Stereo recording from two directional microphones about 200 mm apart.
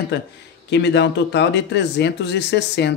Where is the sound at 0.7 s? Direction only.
60° left (ahead or behind).